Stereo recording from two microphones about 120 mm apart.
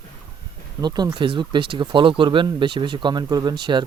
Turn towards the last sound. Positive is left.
turn(degrees=-40)  # may be behind; listen again after turning